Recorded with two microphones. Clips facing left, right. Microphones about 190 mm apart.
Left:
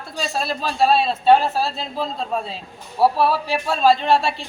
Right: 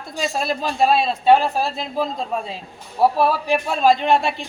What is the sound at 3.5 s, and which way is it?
Speech, 15° right (ahead or behind).